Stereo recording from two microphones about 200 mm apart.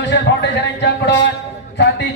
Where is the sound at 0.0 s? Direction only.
60° left (ahead or behind).